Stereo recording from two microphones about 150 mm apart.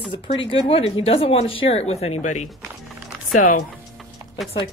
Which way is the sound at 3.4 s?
60° left (ahead or behind).